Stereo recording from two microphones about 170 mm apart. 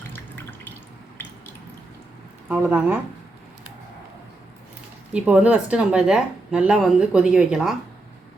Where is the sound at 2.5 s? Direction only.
10° right (ahead or behind).